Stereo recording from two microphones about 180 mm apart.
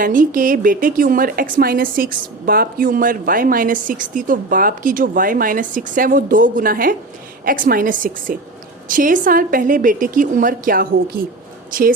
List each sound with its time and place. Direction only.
0.0 s a woman's voice: 50° right (ahead or behind)